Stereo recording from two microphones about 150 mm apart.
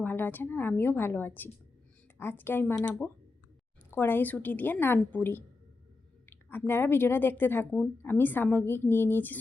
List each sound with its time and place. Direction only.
0.0 s a woman's voice: 10° left (ahead or behind)
6.7 s a woman's voice: 15° left (ahead or behind)